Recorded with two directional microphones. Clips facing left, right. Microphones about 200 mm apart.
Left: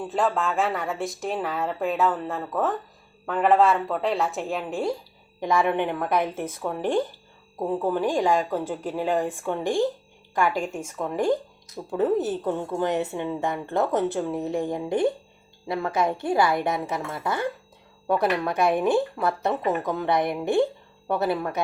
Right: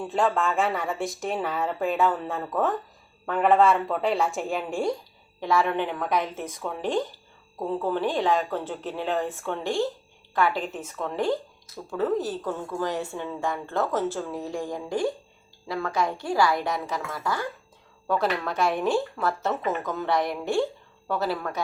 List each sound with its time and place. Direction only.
0.0 s a woman's voice: centre (ahead or behind)
5.4 s a woman's voice: 15° left (ahead or behind)